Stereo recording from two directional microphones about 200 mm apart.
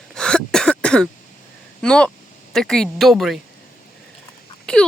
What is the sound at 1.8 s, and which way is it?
Speech, 5° left (ahead or behind).